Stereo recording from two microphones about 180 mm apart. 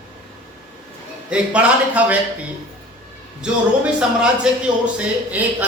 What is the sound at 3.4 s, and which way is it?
A man's voice, 5° right (ahead or behind).